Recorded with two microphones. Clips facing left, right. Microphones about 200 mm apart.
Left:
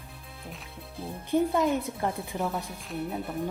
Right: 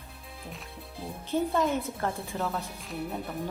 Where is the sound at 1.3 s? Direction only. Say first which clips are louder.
Left 2 dB; 15° left (ahead or behind).